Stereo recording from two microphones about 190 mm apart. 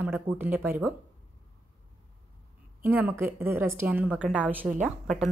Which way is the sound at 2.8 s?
10° right (ahead or behind).